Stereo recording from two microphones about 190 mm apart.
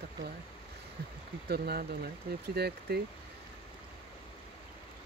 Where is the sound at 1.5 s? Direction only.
55° right (ahead or behind).